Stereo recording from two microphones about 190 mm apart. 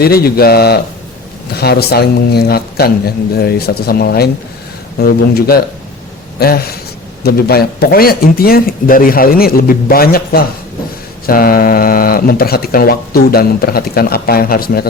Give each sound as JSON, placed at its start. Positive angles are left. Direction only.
{"t": 0.0, "sound": "speech", "side_deg": 55}